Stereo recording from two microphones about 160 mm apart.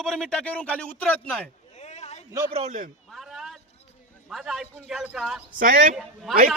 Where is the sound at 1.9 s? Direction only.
45° left (ahead or behind).